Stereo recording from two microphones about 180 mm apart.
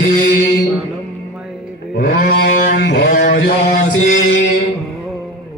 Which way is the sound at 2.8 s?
85° left.